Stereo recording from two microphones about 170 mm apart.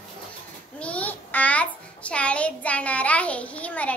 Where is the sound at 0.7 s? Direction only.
10° left (ahead or behind).